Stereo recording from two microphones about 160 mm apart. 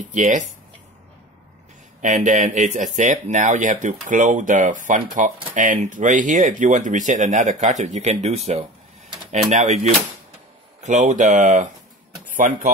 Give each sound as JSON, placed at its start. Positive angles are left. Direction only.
{"t": 0.0, "sound": "speech", "side_deg": -50}
{"t": 2.0, "sound": "speech", "side_deg": -50}
{"t": 10.8, "sound": "speech", "side_deg": -50}